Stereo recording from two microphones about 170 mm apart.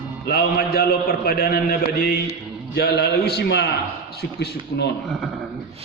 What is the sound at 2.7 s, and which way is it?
A man's voice, 75° left (ahead or behind).